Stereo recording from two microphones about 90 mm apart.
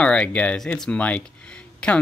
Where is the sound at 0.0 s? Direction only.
15° left (ahead or behind).